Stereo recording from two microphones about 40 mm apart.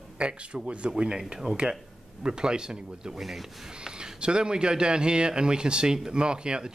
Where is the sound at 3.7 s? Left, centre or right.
Centre.